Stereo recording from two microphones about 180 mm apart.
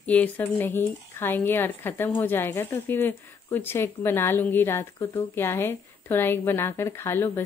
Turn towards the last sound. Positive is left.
turn(degrees=10)  # may be behind; listen again after turning